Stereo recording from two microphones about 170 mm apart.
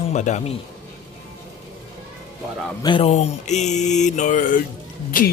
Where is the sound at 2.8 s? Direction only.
30° left (ahead or behind); by 4.6 s 50° left (ahead or behind).